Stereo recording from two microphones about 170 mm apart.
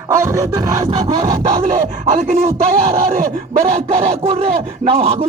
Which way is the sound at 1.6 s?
40° right (ahead or behind).